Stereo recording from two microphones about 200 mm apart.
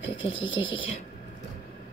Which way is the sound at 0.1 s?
25° left (ahead or behind).